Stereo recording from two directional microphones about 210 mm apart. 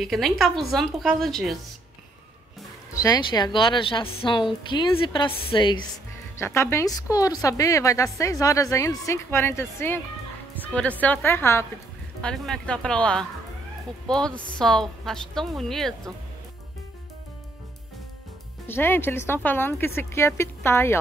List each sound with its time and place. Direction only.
0.0 s a woman's voice: centre (ahead or behind)
3.0 s a woman's voice: 20° left (ahead or behind); by 15.9 s centre (ahead or behind)
18.7 s a woman's voice: 10° left (ahead or behind)